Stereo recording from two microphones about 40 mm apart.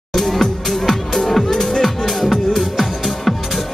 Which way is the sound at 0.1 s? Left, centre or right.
Centre.